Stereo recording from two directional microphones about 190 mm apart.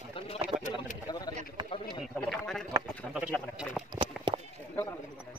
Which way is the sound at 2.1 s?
5° left (ahead or behind).